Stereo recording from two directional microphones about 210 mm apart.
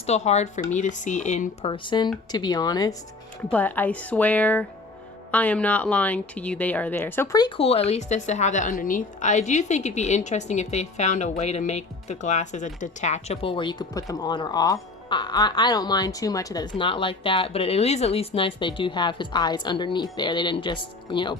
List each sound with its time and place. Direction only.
0.0 s speech: 30° left (ahead or behind)